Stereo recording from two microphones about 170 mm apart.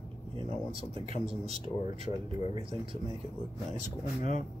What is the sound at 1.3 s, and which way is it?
Speech, 35° right (ahead or behind).